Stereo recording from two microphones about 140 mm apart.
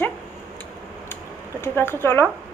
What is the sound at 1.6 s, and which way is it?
Speech, 15° left (ahead or behind).